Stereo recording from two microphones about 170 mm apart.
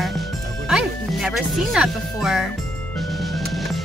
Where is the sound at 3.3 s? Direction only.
Centre (ahead or behind).